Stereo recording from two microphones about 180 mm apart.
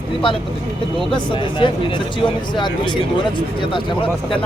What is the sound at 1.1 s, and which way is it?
Speech, 25° left (ahead or behind).